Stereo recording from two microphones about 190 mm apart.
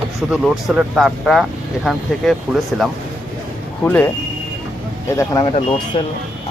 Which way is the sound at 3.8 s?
10° left (ahead or behind).